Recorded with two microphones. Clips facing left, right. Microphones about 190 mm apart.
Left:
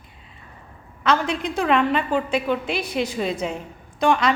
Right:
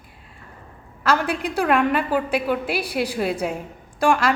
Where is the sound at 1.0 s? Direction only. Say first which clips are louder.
Even; 10° right (ahead or behind).